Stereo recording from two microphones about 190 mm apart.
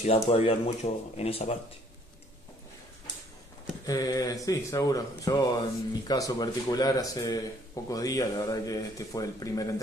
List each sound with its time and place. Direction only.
0.0 s speech: 30° left (ahead or behind)
3.8 s speech: 20° left (ahead or behind)